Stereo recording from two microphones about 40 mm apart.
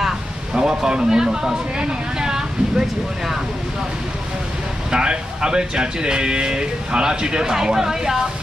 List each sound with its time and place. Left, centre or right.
0.6 s a man's voice: centre
4.9 s speech: right